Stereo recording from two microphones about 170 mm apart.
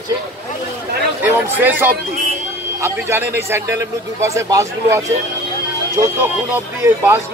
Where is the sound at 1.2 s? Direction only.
10° right (ahead or behind).